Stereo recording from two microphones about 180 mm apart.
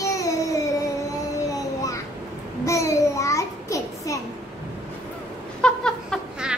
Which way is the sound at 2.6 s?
15° left (ahead or behind).